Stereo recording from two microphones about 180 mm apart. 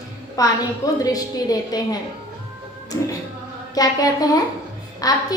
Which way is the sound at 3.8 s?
20° left (ahead or behind).